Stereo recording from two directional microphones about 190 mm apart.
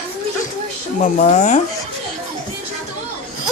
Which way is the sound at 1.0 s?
40° left (ahead or behind).